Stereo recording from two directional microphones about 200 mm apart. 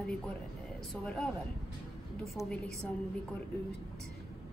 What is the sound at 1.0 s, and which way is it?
Speech, 5° left (ahead or behind).